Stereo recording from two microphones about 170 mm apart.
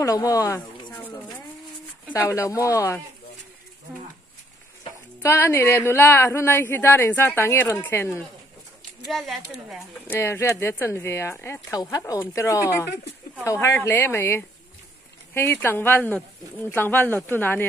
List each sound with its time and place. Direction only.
0.0 s speech: 20° left (ahead or behind)
5.2 s speech: 15° left (ahead or behind)
9.1 s speech: centre (ahead or behind)
10.0 s speech: 15° left (ahead or behind)